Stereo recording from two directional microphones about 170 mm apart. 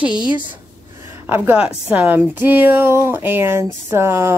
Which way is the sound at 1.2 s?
10° right (ahead or behind).